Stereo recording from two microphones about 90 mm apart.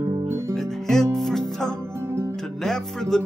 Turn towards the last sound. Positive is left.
turn(degrees=5)  # may be behind; listen again after turning